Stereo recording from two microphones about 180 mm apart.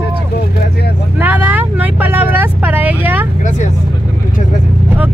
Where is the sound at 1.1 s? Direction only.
10° right (ahead or behind).